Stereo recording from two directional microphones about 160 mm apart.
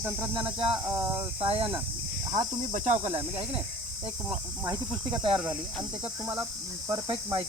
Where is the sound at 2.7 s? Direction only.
50° right (ahead or behind).